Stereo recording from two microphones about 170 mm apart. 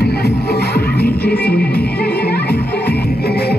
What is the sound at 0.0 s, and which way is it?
Music, 70° left (ahead or behind).